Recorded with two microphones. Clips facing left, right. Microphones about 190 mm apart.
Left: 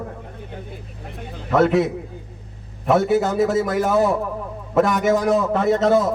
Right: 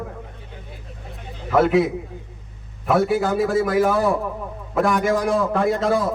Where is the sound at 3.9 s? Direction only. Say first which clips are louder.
Left 2 dB; 20° left (ahead or behind).